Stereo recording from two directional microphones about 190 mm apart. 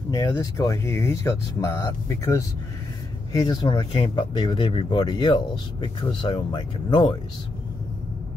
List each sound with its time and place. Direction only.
0.1 s speech: 20° left (ahead or behind)
3.4 s speech: 20° left (ahead or behind)